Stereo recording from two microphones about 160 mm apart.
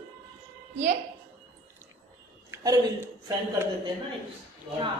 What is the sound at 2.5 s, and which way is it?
A woman's voice, 20° right (ahead or behind).